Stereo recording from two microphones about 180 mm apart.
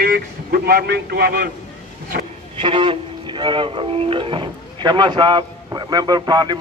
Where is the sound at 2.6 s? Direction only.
30° right (ahead or behind).